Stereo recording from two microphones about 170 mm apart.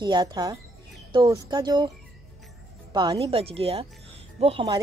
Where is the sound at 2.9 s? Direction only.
25° right (ahead or behind).